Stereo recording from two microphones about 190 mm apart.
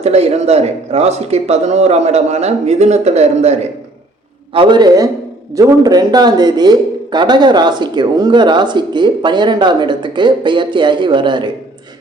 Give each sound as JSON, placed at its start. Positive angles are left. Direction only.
{"t": 0.0, "sound": "a man's voice", "side_deg": -35}